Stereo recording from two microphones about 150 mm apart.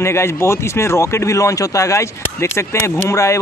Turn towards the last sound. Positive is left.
turn(degrees=20)  # may be behind; listen again after turning